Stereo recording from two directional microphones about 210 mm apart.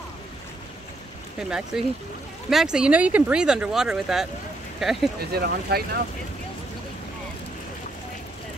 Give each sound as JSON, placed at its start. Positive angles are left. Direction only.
{"t": 1.7, "sound": "speech", "side_deg": 0}
{"t": 5.3, "sound": "speech", "side_deg": -50}